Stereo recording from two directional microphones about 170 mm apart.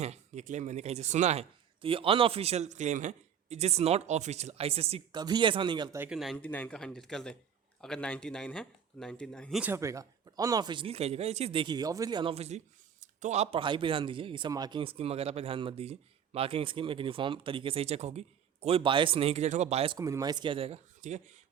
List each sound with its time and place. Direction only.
0.0 s speech: 40° right (ahead or behind)
6.0 s speech: 5° right (ahead or behind)
9.6 s speech: 15° right (ahead or behind)
12.3 s speech: 40° right (ahead or behind)
20.0 s speech: 20° right (ahead or behind); by 21.3 s 45° right (ahead or behind)